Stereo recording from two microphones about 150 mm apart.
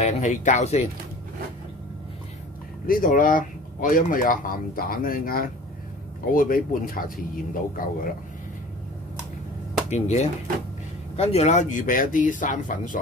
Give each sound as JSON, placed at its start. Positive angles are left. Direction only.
{"t": 0.0, "sound": "speech", "side_deg": 55}
{"t": 2.9, "sound": "speech", "side_deg": 65}
{"t": 9.8, "sound": "speech", "side_deg": 50}